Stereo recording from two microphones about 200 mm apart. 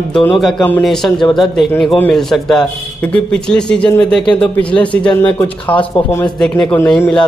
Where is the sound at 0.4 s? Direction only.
5° left (ahead or behind).